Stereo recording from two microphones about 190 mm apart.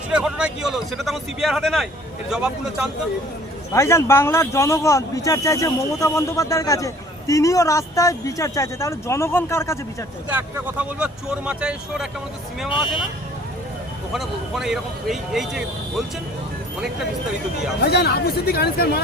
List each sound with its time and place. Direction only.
0.1 s speech: 5° right (ahead or behind)
3.7 s speech: 15° left (ahead or behind)
10.3 s speech: 5° right (ahead or behind)
14.1 s speech: centre (ahead or behind)
17.7 s speech: 55° left (ahead or behind)